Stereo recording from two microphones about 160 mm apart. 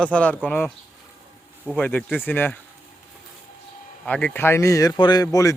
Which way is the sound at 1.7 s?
10° left (ahead or behind).